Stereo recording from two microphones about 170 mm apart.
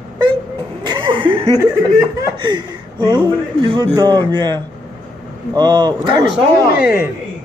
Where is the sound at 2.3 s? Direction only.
25° right (ahead or behind).